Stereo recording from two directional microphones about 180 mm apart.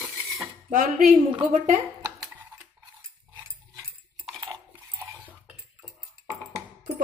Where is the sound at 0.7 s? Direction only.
45° right (ahead or behind).